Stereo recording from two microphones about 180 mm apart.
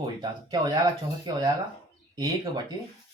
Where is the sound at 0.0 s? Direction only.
25° right (ahead or behind).